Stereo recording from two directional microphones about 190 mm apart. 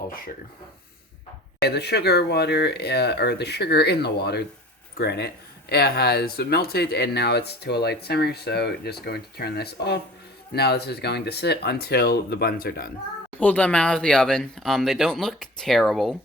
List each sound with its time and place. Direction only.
1.6 s speech: 60° left (ahead or behind)
13.4 s speech: 5° left (ahead or behind)